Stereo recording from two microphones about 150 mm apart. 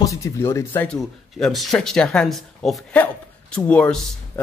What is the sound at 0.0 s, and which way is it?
Speech, 20° left (ahead or behind).